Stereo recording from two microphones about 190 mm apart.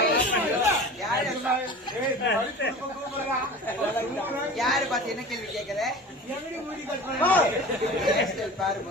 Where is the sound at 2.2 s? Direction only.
65° left (ahead or behind).